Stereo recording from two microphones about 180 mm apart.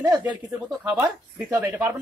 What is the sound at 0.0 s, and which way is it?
Speech, 20° right (ahead or behind).